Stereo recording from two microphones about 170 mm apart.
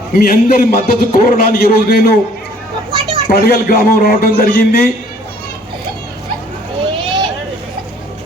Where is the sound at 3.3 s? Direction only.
65° left (ahead or behind).